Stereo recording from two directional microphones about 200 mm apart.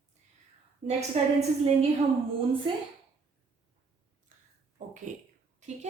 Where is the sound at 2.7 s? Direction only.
25° right (ahead or behind).